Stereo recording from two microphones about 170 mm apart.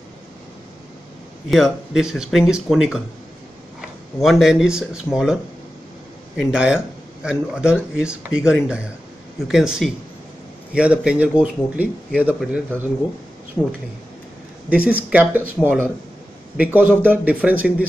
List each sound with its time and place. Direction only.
1.5 s speech: centre (ahead or behind)
4.2 s speech: centre (ahead or behind)
14.7 s speech: 10° right (ahead or behind)